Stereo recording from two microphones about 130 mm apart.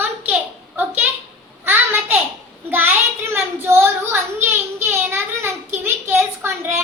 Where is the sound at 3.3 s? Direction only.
20° right (ahead or behind).